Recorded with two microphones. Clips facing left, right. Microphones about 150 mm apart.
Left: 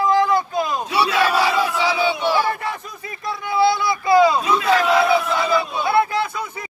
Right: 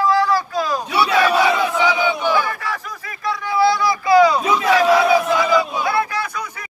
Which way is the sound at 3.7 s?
25° left (ahead or behind).